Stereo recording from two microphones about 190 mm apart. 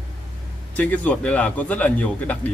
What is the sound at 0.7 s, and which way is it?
Speech, 10° left (ahead or behind).